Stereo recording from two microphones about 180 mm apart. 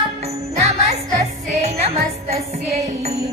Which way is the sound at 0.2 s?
35° right (ahead or behind).